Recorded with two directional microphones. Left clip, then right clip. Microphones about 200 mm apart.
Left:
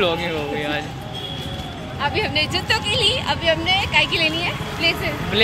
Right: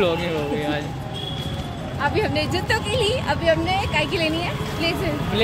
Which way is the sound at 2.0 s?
40° right (ahead or behind).